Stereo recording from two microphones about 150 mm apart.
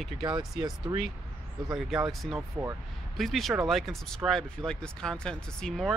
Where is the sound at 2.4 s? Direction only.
15° right (ahead or behind).